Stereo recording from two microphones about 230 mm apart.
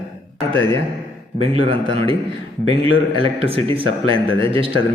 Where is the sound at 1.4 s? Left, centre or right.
Right.